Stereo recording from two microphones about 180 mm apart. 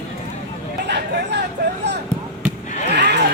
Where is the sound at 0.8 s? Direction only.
70° right (ahead or behind).